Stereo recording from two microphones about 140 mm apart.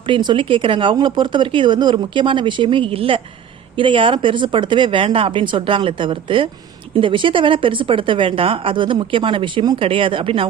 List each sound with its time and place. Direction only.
0.1 s speech: 35° right (ahead or behind)